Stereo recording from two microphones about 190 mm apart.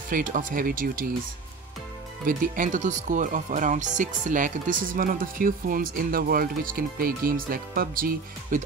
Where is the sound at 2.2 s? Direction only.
45° right (ahead or behind).